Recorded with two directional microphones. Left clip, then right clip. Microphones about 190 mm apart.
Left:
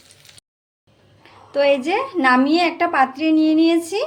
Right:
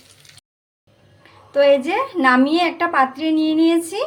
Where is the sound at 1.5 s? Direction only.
5° left (ahead or behind).